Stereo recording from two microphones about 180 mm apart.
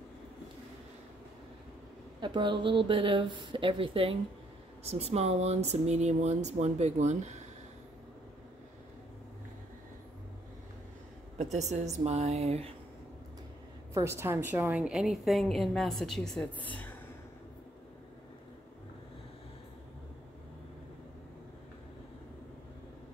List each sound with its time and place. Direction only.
2.1 s speech: 25° right (ahead or behind)
11.3 s speech: 40° right (ahead or behind)
13.9 s a woman's voice: 15° right (ahead or behind); by 16.9 s 10° left (ahead or behind)